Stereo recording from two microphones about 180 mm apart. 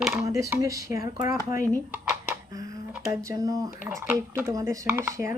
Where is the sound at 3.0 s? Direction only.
15° right (ahead or behind).